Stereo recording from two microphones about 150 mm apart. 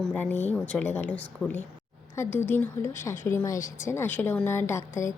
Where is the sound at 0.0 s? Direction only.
5° left (ahead or behind).